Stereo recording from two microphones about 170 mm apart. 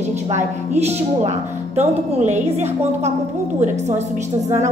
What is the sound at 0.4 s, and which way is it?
Speech, 40° right (ahead or behind).